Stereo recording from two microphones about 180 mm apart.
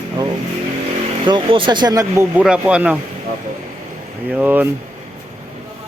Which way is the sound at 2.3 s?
5° right (ahead or behind).